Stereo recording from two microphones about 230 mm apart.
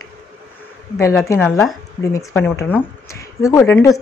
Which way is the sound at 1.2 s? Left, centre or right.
Centre.